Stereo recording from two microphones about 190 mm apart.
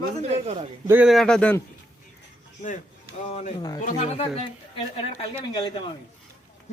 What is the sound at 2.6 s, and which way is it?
Speech, 40° left (ahead or behind).